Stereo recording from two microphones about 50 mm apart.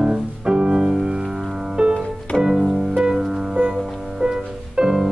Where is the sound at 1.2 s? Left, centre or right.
Centre.